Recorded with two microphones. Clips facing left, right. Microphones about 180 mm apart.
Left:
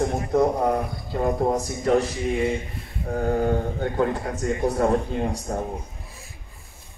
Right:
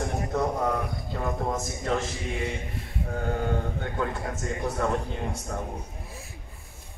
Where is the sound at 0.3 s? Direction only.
30° left (ahead or behind).